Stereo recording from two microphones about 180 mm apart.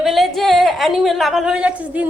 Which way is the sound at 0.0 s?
Centre (ahead or behind).